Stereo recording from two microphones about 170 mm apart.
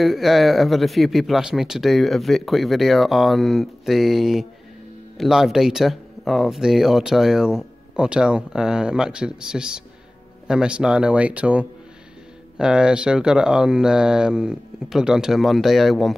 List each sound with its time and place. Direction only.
0.0 s speech: centre (ahead or behind)